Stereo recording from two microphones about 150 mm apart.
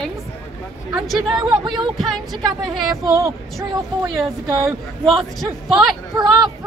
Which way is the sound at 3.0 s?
20° right (ahead or behind).